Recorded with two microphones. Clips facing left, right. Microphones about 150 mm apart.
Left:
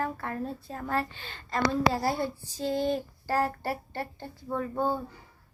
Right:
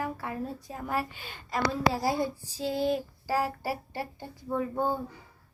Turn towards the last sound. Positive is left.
turn(degrees=-15)  # may be behind; listen again after turning